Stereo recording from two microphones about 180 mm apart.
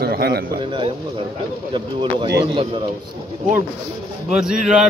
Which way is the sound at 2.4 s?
30° right (ahead or behind).